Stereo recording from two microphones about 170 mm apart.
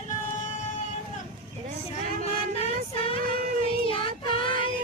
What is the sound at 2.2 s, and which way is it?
Music, 35° left (ahead or behind).